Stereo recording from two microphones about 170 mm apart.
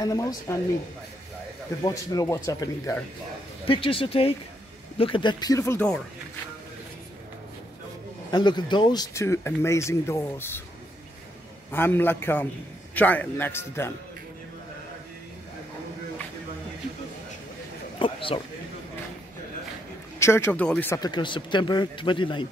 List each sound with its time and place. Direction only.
0.0 s a man's voice: 20° left (ahead or behind)
1.8 s a man's voice: 20° left (ahead or behind)
3.6 s a man's voice: 30° left (ahead or behind)
8.3 s speech: 25° left (ahead or behind)
11.7 s speech: 10° left (ahead or behind)
17.9 s a man's voice: 30° left (ahead or behind)
20.2 s speech: 15° left (ahead or behind)
21.0 s a man's voice: 25° left (ahead or behind)